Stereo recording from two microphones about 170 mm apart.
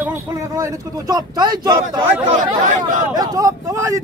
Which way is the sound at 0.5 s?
20° right (ahead or behind).